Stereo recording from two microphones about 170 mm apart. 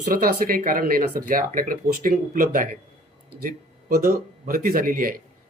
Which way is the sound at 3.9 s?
60° right (ahead or behind).